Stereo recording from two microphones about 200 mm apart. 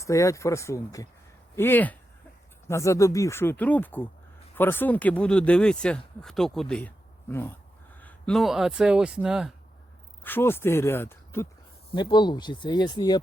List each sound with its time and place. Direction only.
0.0 s speech: 15° left (ahead or behind); by 9.5 s 5° right (ahead or behind)
10.2 s speech: 10° left (ahead or behind)
11.9 s speech: 20° left (ahead or behind)